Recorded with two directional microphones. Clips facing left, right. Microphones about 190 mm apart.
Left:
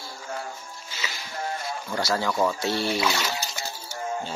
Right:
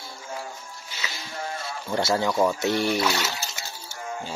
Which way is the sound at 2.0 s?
20° right (ahead or behind).